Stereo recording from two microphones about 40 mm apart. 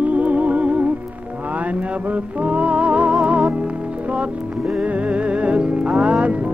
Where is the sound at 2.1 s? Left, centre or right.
Right.